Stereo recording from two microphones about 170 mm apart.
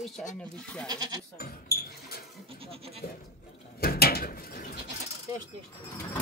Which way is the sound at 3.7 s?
65° left (ahead or behind).